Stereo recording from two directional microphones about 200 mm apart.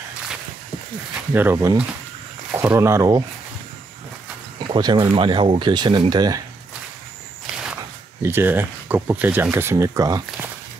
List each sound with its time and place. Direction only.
1.3 s speech: 10° right (ahead or behind)
4.6 s speech: 20° right (ahead or behind)
8.2 s speech: 10° right (ahead or behind)